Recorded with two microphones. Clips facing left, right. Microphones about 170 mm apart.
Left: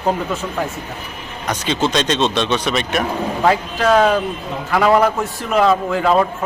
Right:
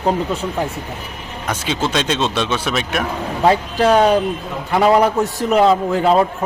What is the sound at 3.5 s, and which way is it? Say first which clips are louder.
A man's voice: right 2 dB; 25° right (ahead or behind).